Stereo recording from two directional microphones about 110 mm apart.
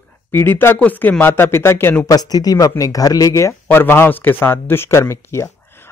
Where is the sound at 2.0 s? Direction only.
35° left (ahead or behind).